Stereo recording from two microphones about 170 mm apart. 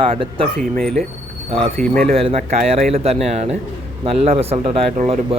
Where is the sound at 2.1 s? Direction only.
40° right (ahead or behind).